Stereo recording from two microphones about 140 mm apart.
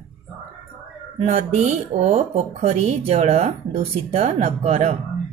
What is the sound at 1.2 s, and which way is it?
Speech, 50° right (ahead or behind).